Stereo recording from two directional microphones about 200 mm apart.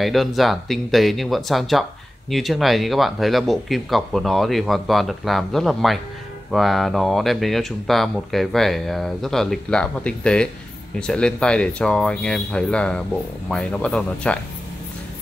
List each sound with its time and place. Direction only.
0.0 s speech: centre (ahead or behind)